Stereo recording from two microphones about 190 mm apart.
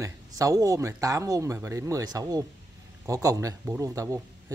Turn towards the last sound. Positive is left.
turn(degrees=-15)  # may be behind; listen again after turning